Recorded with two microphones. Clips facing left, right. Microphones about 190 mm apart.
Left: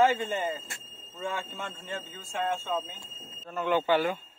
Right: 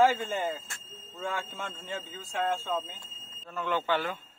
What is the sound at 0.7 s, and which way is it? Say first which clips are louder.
Speech: even; 15° left (ahead or behind).